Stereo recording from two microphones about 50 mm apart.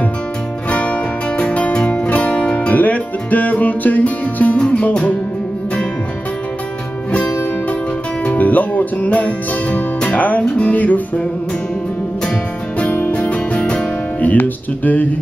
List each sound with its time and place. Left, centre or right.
0.7 s music: left
4.6 s music: left
8.3 s music: left
13.3 s music: left
14.2 s music: left